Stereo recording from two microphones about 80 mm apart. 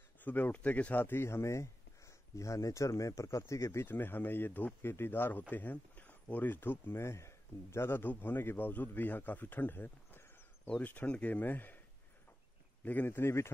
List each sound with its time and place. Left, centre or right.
0.2 s speech: left
3.8 s speech: left
12.8 s speech: left